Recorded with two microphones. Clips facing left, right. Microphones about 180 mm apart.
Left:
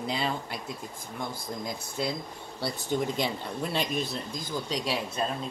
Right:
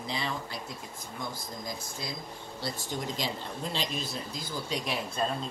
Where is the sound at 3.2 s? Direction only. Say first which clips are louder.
Left 4 dB; 60° left (ahead or behind).